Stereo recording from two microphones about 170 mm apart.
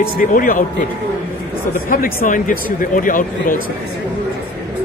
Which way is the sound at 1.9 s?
55° left (ahead or behind).